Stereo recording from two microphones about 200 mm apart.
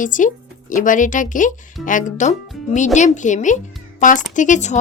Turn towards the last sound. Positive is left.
turn(degrees=35)  # may be behind; listen again after turning